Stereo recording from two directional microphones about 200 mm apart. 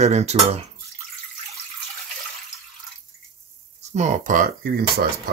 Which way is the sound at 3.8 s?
35° right (ahead or behind).